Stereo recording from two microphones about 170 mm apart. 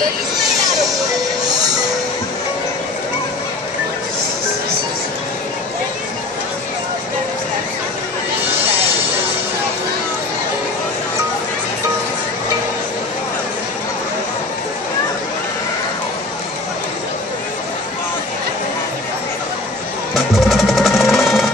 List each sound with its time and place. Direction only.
20.2 s music: centre (ahead or behind)